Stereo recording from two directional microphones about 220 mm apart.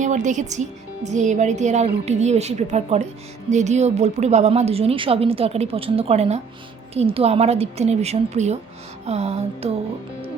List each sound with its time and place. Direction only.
0.0 s a woman's voice: 35° right (ahead or behind)